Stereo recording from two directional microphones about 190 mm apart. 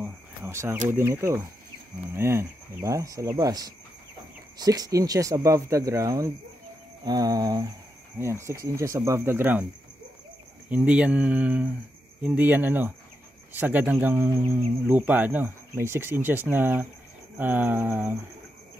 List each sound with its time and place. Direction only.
0.0 s a sound: 10° right (ahead or behind)
0.8 s speech: 15° right (ahead or behind)
7.1 s cricket: 20° right (ahead or behind)
8.2 s speech: 15° right (ahead or behind)
10.7 s speech: 5° right (ahead or behind)